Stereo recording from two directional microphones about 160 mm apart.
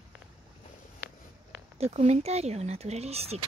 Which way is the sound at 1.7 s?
40° right (ahead or behind).